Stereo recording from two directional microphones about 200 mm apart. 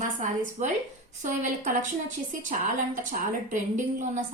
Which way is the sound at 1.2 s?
40° right (ahead or behind).